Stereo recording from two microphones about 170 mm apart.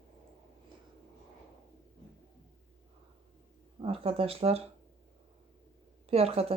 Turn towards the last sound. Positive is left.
turn(degrees=-35)  # may be behind; listen again after turning